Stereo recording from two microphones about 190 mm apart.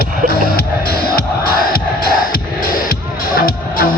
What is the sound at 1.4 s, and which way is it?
Music, 50° left (ahead or behind).